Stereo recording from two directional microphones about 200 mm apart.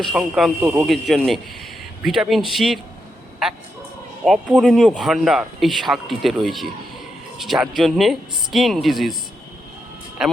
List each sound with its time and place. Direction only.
0.0 s speech: centre (ahead or behind)
10.2 s speech: 5° right (ahead or behind)